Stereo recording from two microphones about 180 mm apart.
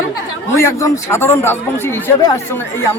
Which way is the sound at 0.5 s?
15° left (ahead or behind).